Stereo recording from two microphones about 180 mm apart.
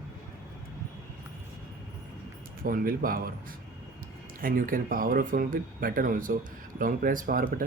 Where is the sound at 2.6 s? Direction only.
50° right (ahead or behind).